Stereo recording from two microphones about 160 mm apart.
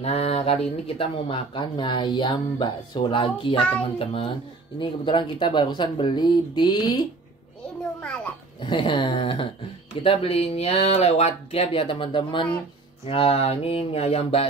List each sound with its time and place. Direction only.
0.0 s speech: 40° left (ahead or behind)
8.6 s speech: 30° left (ahead or behind)